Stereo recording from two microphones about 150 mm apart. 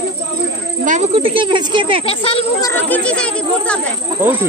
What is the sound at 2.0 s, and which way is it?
Speech, 40° left (ahead or behind).